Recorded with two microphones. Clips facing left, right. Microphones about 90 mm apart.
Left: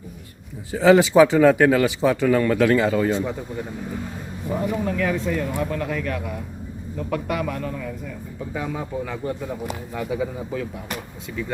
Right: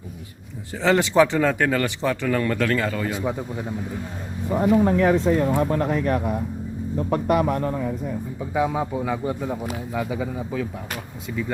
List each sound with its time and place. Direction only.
0.7 s speech: 5° left (ahead or behind)
3.1 s speech: 10° right (ahead or behind)
4.8 s speech: 35° right (ahead or behind)
8.5 s speech: 15° right (ahead or behind); by 10.7 s centre (ahead or behind)